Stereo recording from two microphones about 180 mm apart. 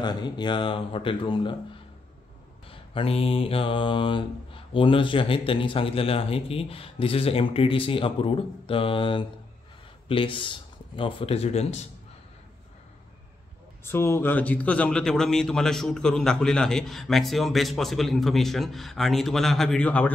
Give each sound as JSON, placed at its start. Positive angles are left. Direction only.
{"t": 0.0, "sound": "speech", "side_deg": 25}
{"t": 2.7, "sound": "mantra", "side_deg": 30}
{"t": 10.0, "sound": "speech", "side_deg": 30}
{"t": 13.8, "sound": "a man's voice", "side_deg": 15}